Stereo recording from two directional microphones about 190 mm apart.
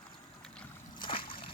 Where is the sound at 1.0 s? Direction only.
25° left (ahead or behind).